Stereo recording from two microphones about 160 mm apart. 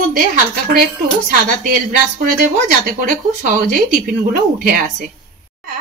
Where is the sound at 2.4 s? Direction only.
60° right (ahead or behind).